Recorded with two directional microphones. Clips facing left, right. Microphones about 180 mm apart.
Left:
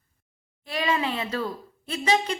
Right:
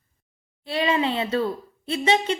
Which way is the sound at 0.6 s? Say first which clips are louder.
Right 4 dB; 30° right (ahead or behind).